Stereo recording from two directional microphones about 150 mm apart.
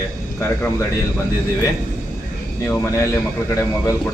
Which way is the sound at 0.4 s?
15° left (ahead or behind).